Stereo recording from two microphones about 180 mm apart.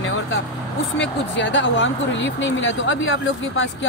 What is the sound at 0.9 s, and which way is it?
Speech, 85° left.